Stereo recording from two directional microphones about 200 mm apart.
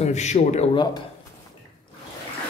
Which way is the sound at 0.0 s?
35° left (ahead or behind).